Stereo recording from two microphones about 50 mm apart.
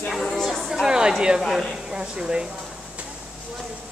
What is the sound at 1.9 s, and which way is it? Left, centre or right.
Speech, centre.